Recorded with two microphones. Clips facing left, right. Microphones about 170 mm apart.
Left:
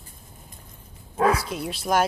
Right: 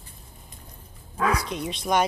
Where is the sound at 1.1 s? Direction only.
35° left (ahead or behind).